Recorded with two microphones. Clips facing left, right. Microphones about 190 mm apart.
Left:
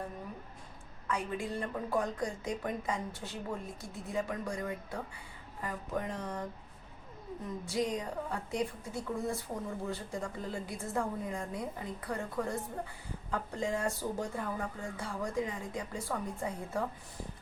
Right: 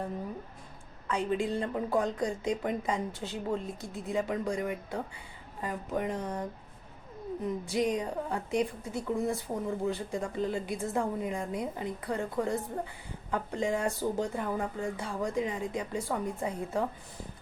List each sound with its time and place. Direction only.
1.0 s a woman's voice: 25° right (ahead or behind)
7.4 s a woman's voice: 20° right (ahead or behind)